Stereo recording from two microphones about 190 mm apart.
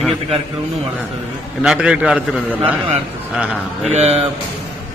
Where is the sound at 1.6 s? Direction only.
5° right (ahead or behind).